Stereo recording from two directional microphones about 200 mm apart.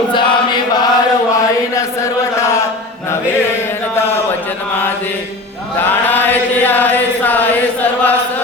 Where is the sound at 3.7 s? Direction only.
10° left (ahead or behind).